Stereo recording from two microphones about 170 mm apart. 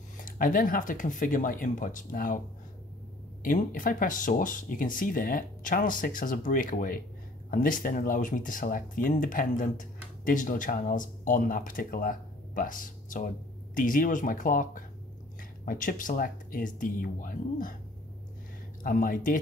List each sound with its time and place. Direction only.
0.2 s speech: 55° left (ahead or behind)
3.4 s speech: 50° left (ahead or behind)
18.8 s speech: 55° left (ahead or behind)